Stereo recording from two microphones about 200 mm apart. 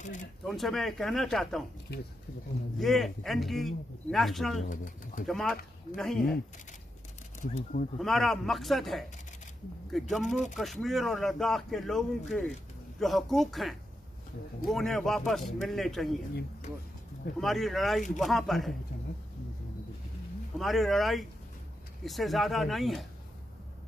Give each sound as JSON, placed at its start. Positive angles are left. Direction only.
{"t": 0.0, "sound": "a sound", "side_deg": 40}
{"t": 0.5, "sound": "speech", "side_deg": 0}
{"t": 2.8, "sound": "speech", "side_deg": 0}
{"t": 4.6, "sound": "speech", "side_deg": 40}
{"t": 5.2, "sound": "speech", "side_deg": 0}
{"t": 7.3, "sound": "speech", "side_deg": 40}
{"t": 8.0, "sound": "speech", "side_deg": 0}
{"t": 17.4, "sound": "speech", "side_deg": 0}
{"t": 20.5, "sound": "speech", "side_deg": 0}